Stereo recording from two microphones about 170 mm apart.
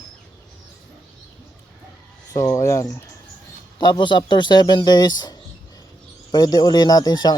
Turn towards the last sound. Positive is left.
turn(degrees=25)  # may be behind; listen again after turning